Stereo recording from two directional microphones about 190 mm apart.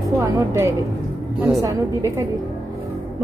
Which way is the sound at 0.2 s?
10° right (ahead or behind).